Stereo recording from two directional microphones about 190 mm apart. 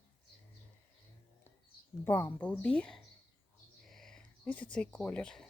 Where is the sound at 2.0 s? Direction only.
10° left (ahead or behind).